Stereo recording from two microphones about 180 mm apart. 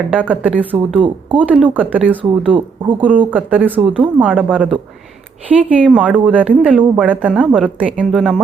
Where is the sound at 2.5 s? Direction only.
25° right (ahead or behind).